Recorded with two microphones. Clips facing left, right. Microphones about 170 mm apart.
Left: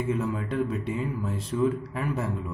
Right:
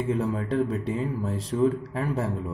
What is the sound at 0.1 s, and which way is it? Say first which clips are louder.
A man's voice: right 2 dB; 30° right (ahead or behind).